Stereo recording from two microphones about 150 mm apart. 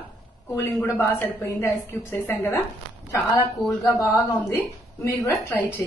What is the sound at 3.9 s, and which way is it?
A woman's voice, 20° left (ahead or behind).